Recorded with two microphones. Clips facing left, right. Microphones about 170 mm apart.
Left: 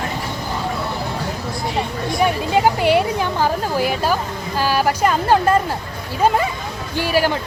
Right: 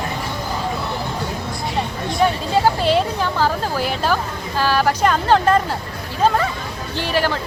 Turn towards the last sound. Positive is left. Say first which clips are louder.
# left 2 dB
turn(degrees=10)  # may be behind; listen again after turning